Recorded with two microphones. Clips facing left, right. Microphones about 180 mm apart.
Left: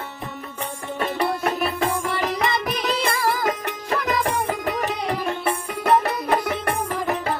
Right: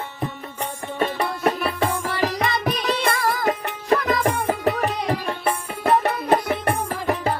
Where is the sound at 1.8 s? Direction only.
30° right (ahead or behind).